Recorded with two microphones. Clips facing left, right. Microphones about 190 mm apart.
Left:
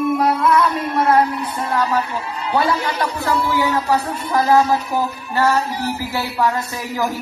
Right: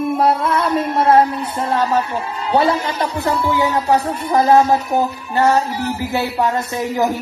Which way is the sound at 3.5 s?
20° right (ahead or behind).